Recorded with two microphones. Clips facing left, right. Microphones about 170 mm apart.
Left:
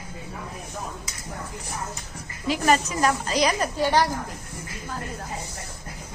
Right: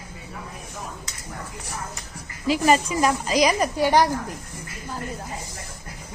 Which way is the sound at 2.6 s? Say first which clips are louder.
Right 1 dB; 5° right (ahead or behind).